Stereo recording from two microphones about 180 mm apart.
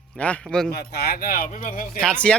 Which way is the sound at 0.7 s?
60° left (ahead or behind).